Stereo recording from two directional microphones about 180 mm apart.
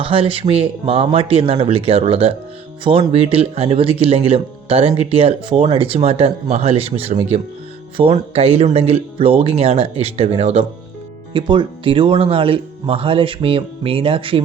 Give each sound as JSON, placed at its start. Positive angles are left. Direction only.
{"t": 0.0, "sound": "speech", "side_deg": -30}